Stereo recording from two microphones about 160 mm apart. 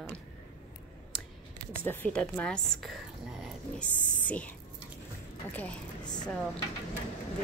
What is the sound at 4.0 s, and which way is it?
Speech, 50° left (ahead or behind).